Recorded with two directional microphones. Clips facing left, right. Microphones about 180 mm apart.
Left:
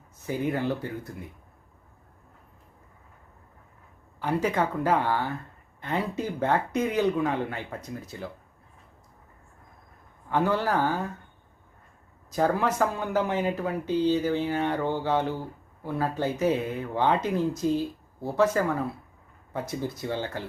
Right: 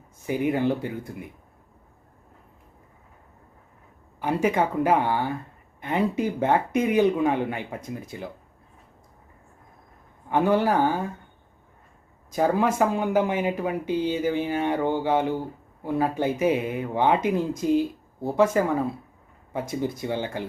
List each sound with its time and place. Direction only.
0.3 s speech: 15° right (ahead or behind)
4.2 s speech: 15° right (ahead or behind)
10.2 s speech: 15° right (ahead or behind)
12.3 s speech: 15° right (ahead or behind)